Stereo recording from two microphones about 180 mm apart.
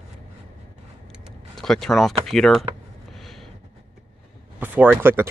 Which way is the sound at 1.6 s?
Centre (ahead or behind).